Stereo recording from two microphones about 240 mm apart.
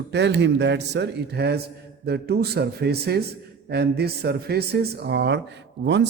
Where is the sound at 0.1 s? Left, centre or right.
Right.